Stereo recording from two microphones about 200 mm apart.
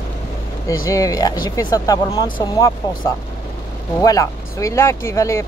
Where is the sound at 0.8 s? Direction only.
15° left (ahead or behind).